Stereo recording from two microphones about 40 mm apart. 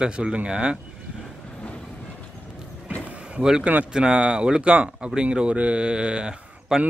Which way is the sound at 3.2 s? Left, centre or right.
Right.